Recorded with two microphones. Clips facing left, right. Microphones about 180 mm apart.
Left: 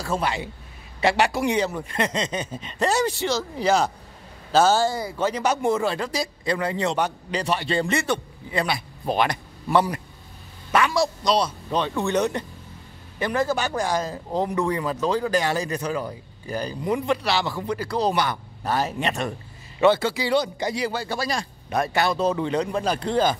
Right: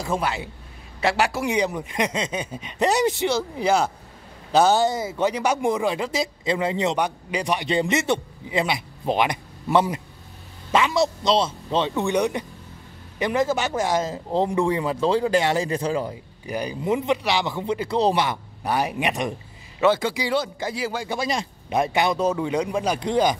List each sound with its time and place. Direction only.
0.2 s a man's voice: 5° right (ahead or behind)
1.6 s a man's voice: 15° right (ahead or behind)
12.0 s speech: 15° right (ahead or behind)
16.4 s speech: 15° right (ahead or behind)
18.6 s speech: 15° right (ahead or behind)